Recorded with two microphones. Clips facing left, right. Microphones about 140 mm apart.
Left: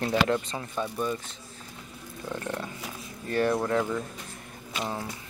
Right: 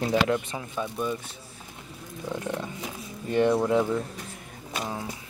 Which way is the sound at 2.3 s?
15° right (ahead or behind).